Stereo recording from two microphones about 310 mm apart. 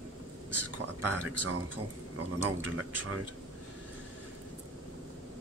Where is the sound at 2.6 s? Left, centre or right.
Right.